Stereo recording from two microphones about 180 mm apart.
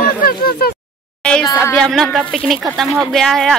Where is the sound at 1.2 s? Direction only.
5° left (ahead or behind).